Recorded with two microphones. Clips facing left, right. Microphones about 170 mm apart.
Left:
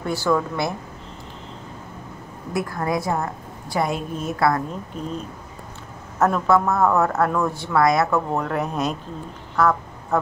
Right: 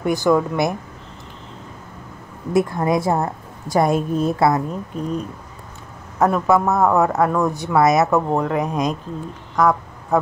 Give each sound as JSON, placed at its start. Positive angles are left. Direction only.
{"t": 0.0, "sound": "a man's voice", "side_deg": -15}
{"t": 2.5, "sound": "speech", "side_deg": -25}
{"t": 3.1, "sound": "a woman's voice", "side_deg": -40}
{"t": 4.3, "sound": "speech", "side_deg": -20}
{"t": 6.1, "sound": "a man's voice", "side_deg": -15}